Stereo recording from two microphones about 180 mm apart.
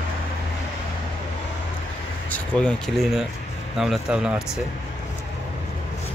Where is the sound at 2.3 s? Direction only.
5° left (ahead or behind).